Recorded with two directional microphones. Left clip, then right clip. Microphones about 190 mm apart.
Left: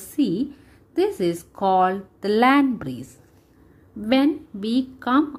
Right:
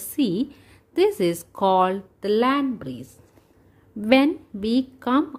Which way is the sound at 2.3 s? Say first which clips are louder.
Left 3 dB; 5° left (ahead or behind).